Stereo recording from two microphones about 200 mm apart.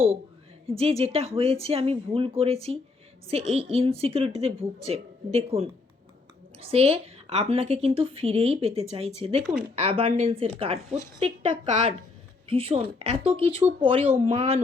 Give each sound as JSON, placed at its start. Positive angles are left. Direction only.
{"t": 0.7, "sound": "a woman's voice", "side_deg": -30}
{"t": 9.4, "sound": "speech", "side_deg": 0}
{"t": 9.7, "sound": "a woman's voice", "side_deg": -30}